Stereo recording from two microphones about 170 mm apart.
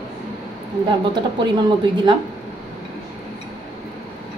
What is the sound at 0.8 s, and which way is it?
Speech, 25° right (ahead or behind).